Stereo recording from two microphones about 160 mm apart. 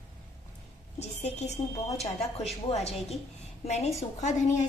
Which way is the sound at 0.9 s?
45° left (ahead or behind).